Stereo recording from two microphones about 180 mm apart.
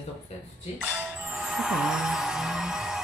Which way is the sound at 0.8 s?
5° right (ahead or behind).